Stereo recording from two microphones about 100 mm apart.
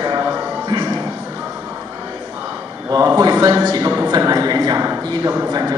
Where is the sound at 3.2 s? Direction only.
40° right (ahead or behind).